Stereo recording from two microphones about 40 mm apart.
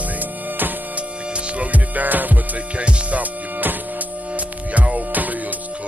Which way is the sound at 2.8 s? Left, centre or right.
Right.